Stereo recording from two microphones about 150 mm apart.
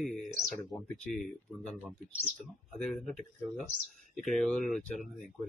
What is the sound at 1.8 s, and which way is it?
Speech, 10° right (ahead or behind).